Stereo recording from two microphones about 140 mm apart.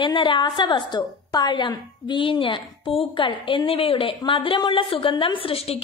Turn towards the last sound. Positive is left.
turn(degrees=45)  # may be behind; listen again after turning